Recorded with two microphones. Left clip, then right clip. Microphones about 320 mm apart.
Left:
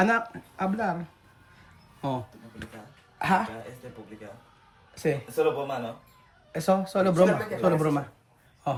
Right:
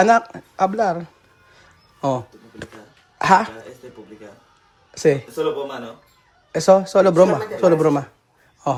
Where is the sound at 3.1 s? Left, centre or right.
Right.